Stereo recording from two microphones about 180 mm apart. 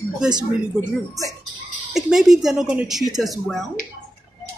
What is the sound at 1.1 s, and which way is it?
Speech, 20° right (ahead or behind).